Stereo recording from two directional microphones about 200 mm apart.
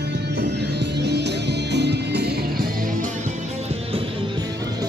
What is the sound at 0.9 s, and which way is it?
Music, 55° right (ahead or behind).